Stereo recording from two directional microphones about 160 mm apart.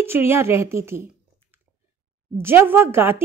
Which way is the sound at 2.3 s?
15° right (ahead or behind).